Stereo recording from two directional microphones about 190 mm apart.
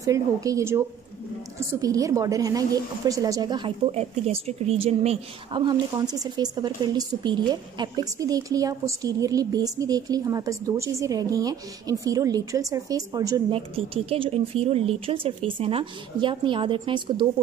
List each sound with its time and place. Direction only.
0.0 s a woman's voice: 15° right (ahead or behind)
13.5 s a woman's voice: 30° right (ahead or behind)